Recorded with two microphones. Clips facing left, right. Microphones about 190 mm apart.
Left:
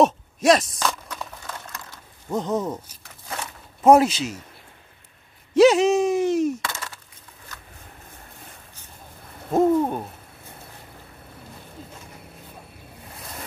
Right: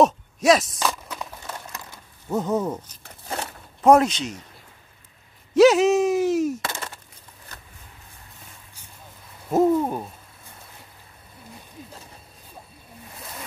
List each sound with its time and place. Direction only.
0.0 s a sound: centre (ahead or behind)
2.2 s speech: 5° right (ahead or behind)
3.8 s speech: 5° left (ahead or behind)
5.5 s speech: centre (ahead or behind)
6.6 s a sound: 25° right (ahead or behind)
9.5 s speech: 5° right (ahead or behind)